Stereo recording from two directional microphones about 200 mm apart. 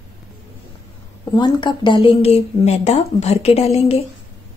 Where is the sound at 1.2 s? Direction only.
20° left (ahead or behind).